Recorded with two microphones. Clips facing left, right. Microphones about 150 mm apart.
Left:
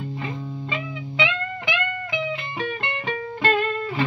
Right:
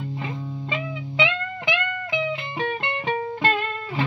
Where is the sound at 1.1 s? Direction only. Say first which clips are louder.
Right 1 dB; 20° right (ahead or behind).